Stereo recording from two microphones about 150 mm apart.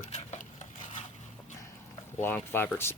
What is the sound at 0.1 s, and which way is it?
Dishes, 50° left (ahead or behind).